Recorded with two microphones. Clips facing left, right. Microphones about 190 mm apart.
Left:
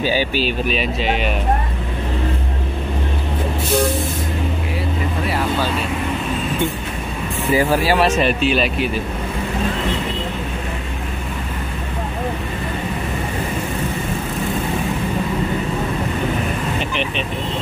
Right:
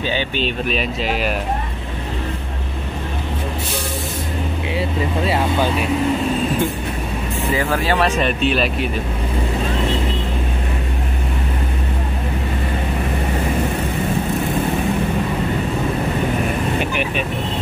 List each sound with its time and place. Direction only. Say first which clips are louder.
0.0 s speech: left 3 dB; 5° left (ahead or behind)
5.2 s vehicle: right 2 dB; 25° right (ahead or behind)
8.2 s speech: left 1 dB; centre (ahead or behind)